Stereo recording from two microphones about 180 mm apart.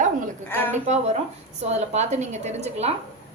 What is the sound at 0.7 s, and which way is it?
A woman's voice, 40° right (ahead or behind).